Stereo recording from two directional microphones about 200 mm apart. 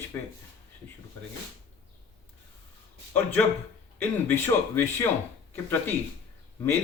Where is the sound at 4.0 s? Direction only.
10° left (ahead or behind).